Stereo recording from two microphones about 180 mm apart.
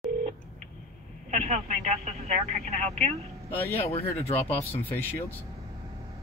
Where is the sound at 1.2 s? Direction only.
35° right (ahead or behind).